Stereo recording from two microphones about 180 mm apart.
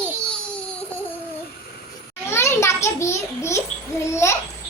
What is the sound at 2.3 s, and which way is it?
Child singing, 15° left (ahead or behind).